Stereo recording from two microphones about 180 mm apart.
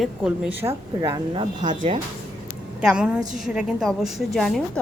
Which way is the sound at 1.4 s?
25° right (ahead or behind).